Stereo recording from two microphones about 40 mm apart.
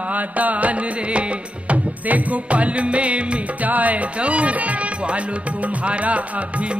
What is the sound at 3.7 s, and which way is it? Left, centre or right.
Music, right.